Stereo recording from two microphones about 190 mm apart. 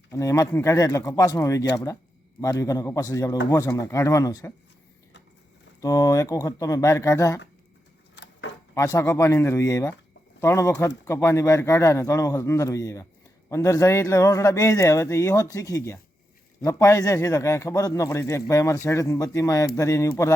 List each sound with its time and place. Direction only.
0.1 s a man's voice: 15° left (ahead or behind)
5.8 s a man's voice: 20° left (ahead or behind)
8.1 s a sound: 65° left (ahead or behind)
8.7 s a man's voice: 15° left (ahead or behind)